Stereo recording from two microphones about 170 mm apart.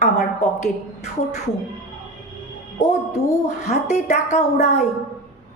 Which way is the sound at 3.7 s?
40° left (ahead or behind).